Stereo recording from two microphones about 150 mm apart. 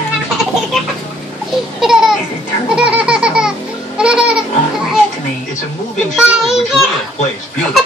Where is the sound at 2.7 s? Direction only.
10° right (ahead or behind).